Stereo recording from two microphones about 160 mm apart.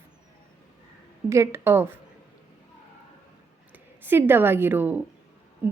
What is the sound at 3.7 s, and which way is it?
A woman's voice, 10° right (ahead or behind).